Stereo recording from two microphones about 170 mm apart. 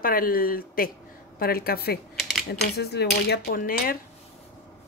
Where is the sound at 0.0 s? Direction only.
55° left (ahead or behind).